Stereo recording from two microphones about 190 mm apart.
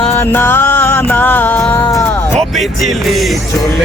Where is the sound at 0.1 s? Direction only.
10° left (ahead or behind).